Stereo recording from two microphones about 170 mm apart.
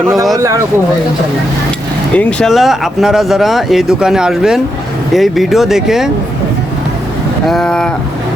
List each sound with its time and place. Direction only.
0.3 s speech: 20° right (ahead or behind)
2.1 s speech: centre (ahead or behind)
7.4 s speech: centre (ahead or behind)